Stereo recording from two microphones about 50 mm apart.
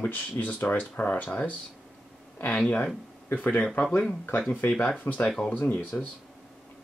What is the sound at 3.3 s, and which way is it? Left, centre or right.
Speech, left.